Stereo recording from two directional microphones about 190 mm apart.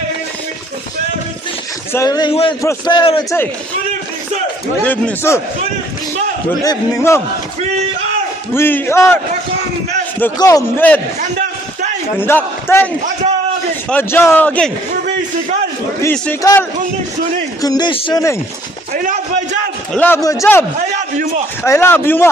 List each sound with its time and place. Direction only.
1.9 s a man's voice: 15° left (ahead or behind)
4.8 s a man's voice: 10° left (ahead or behind)
6.6 s a man's voice: 20° left (ahead or behind)
8.5 s a man's voice: 10° left (ahead or behind)
10.2 s a man's voice: 15° left (ahead or behind)
11.1 s a sound: 40° right (ahead or behind)
12.2 s a man's voice: 10° left (ahead or behind)
16.0 s a man's voice: 10° left (ahead or behind)
19.9 s a man's voice: 10° left (ahead or behind)
21.6 s a man's voice: 10° left (ahead or behind)